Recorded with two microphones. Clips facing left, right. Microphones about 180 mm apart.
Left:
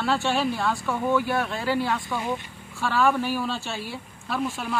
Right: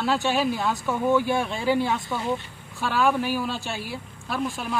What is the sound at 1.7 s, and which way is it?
Speech, 20° right (ahead or behind).